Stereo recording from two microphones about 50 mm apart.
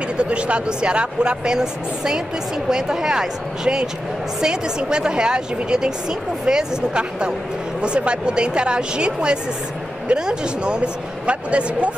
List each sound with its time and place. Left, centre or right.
0.2 s a woman's voice: right